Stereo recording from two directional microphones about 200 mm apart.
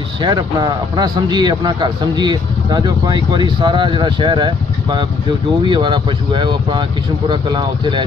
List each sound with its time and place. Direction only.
0.2 s a man's voice: 20° right (ahead or behind)